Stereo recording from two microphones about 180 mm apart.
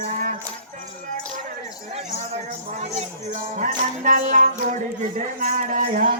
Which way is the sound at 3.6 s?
45° right (ahead or behind).